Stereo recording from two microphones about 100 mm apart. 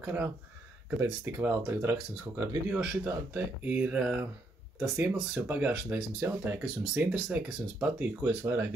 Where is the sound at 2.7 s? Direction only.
10° right (ahead or behind).